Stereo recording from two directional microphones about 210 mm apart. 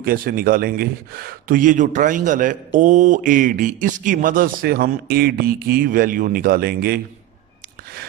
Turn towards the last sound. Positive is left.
turn(degrees=-45)  # may be behind; listen again after turning